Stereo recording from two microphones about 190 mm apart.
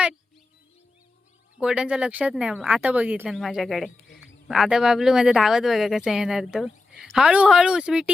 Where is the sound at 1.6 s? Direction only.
5° right (ahead or behind).